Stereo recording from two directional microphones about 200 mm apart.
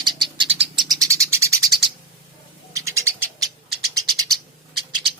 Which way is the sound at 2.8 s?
15° right (ahead or behind).